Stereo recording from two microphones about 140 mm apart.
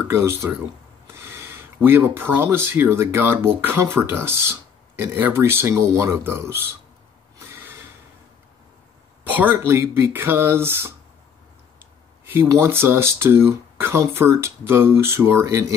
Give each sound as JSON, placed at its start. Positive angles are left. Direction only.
{"t": 0.1, "sound": "speech", "side_deg": -20}
{"t": 7.3, "sound": "a sound", "side_deg": -15}
{"t": 9.2, "sound": "speech", "side_deg": -15}